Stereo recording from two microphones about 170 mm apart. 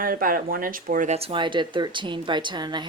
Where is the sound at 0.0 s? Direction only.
55° right (ahead or behind).